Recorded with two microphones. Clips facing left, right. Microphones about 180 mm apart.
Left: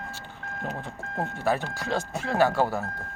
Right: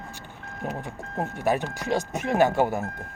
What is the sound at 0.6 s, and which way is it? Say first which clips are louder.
Speech: right 2 dB; 15° right (ahead or behind).